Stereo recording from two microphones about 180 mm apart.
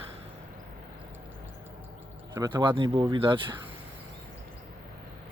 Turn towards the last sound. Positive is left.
turn(degrees=-30)  # may be behind; listen again after turning